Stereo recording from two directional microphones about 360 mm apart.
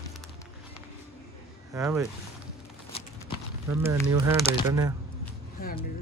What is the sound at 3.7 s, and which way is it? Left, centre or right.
Speech, centre.